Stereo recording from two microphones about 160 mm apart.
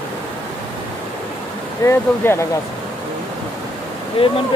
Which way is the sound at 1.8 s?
15° left (ahead or behind).